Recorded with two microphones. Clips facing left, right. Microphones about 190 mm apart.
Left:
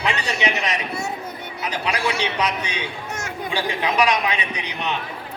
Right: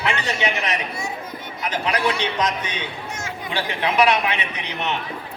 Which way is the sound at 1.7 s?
10° left (ahead or behind).